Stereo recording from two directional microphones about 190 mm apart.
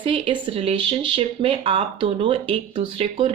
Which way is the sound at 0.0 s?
30° right (ahead or behind).